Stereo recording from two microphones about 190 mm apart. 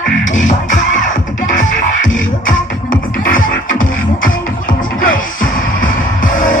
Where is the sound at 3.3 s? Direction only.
45° left (ahead or behind).